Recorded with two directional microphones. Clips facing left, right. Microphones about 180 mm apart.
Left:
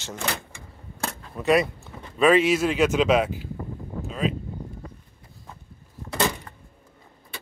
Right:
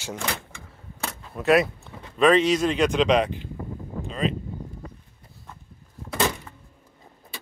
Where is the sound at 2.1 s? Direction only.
5° left (ahead or behind).